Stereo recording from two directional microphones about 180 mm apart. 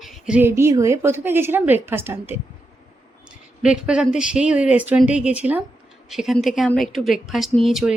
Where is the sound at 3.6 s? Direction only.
5° right (ahead or behind).